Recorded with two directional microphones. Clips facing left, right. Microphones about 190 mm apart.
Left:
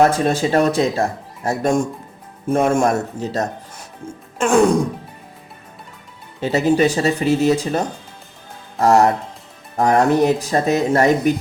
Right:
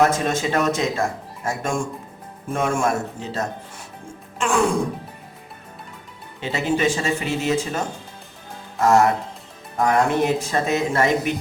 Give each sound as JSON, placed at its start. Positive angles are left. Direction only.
{"t": 0.0, "sound": "speech", "side_deg": 35}
{"t": 4.4, "sound": "music", "side_deg": 40}
{"t": 6.4, "sound": "speech", "side_deg": 40}